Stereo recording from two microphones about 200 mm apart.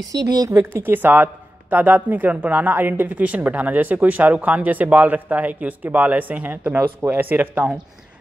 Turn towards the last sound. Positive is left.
turn(degrees=-10)  # may be behind; listen again after turning